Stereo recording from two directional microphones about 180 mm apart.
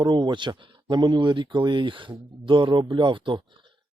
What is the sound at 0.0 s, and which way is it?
Speech, 25° right (ahead or behind).